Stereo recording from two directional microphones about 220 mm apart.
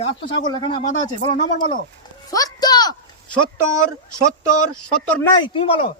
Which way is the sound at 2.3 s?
15° left (ahead or behind).